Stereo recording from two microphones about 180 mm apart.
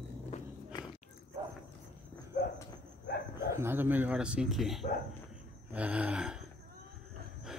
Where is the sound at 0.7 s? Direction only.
25° left (ahead or behind).